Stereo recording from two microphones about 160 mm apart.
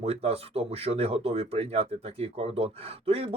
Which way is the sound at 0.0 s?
40° right (ahead or behind).